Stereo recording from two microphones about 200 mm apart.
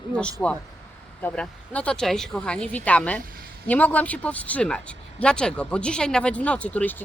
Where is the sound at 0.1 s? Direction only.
5° left (ahead or behind).